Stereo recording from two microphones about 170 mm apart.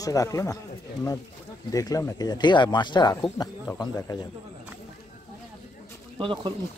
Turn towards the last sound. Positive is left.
turn(degrees=-30)  # may be behind; listen again after turning